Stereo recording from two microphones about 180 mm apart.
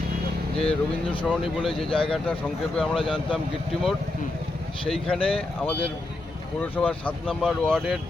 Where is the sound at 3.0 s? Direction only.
30° left (ahead or behind).